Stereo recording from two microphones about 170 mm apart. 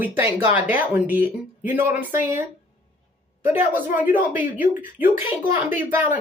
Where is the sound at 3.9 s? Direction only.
10° right (ahead or behind).